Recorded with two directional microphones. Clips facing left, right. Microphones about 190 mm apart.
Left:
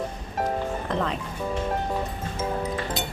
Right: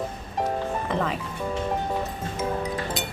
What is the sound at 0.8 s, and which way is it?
Music, 5° right (ahead or behind).